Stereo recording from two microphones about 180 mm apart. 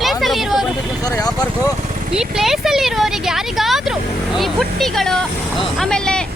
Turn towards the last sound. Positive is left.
turn(degrees=5)  # may be behind; listen again after turning